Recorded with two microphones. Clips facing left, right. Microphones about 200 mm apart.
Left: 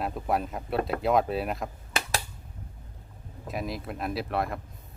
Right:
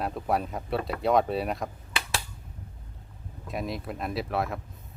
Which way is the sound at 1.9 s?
45° left (ahead or behind).